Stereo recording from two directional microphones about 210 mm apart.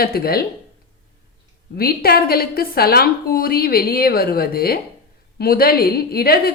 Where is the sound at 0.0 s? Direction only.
45° left (ahead or behind).